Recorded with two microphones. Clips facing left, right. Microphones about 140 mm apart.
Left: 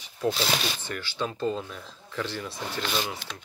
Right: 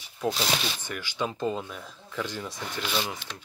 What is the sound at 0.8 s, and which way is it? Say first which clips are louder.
Speech: even; 15° right (ahead or behind).